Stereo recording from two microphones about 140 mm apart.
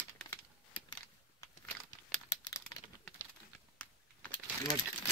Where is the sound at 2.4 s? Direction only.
25° left (ahead or behind).